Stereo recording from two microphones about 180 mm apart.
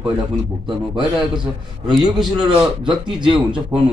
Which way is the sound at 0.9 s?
25° right (ahead or behind).